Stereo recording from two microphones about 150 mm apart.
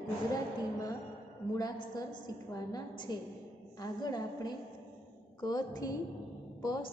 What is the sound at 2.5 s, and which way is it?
A woman's voice, 30° left (ahead or behind).